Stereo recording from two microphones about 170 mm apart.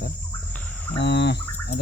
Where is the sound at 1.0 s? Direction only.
90° left.